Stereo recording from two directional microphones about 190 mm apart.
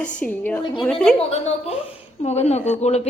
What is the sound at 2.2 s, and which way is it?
Speech, 35° left (ahead or behind).